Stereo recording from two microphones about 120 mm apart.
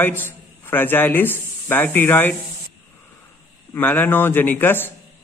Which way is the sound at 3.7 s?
15° left (ahead or behind).